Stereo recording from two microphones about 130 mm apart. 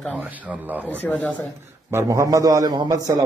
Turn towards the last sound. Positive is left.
turn(degrees=-30)  # may be behind; listen again after turning